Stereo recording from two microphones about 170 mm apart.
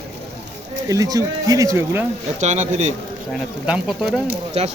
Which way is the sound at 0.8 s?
20° right (ahead or behind).